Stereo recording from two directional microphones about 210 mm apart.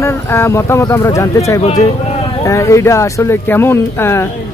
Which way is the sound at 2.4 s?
15° left (ahead or behind).